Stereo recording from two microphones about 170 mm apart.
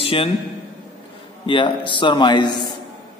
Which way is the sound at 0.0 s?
35° left (ahead or behind).